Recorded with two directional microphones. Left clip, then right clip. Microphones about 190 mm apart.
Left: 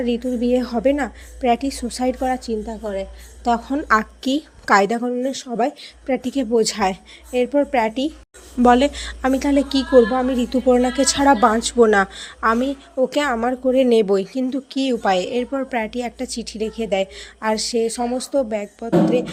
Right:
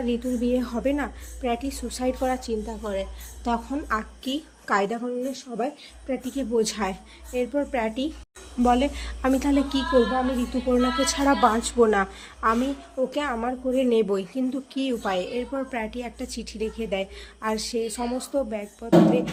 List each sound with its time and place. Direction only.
0.0 s a woman's voice: 25° left (ahead or behind)
3.5 s a woman's voice: 30° left (ahead or behind)